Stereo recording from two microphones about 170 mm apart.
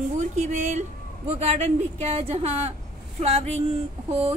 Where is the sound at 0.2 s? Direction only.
45° right (ahead or behind).